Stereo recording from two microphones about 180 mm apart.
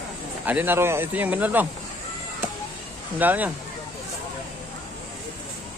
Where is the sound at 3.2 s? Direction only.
10° right (ahead or behind).